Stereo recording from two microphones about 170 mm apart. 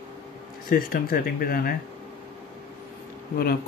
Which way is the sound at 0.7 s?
60° left (ahead or behind).